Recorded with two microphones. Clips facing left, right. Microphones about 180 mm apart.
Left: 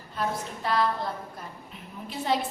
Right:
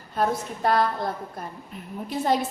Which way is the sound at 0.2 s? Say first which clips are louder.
Right 6 dB; 50° right (ahead or behind).